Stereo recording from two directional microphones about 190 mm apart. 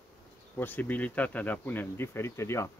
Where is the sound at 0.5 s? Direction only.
10° left (ahead or behind).